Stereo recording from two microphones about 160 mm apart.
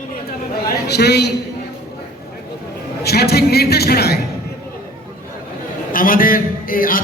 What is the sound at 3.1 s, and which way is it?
A man's voice, 85° left.